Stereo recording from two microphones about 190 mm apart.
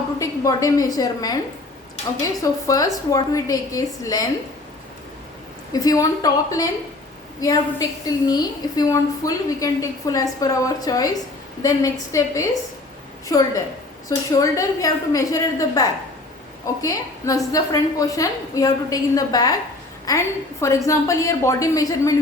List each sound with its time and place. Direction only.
0.2 s a woman's voice: 15° left (ahead or behind)
2.4 s a woman's voice: 15° left (ahead or behind)
5.8 s a woman's voice: 20° left (ahead or behind)